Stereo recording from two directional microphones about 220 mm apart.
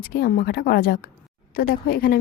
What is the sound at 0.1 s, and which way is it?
A woman's voice, 45° left (ahead or behind).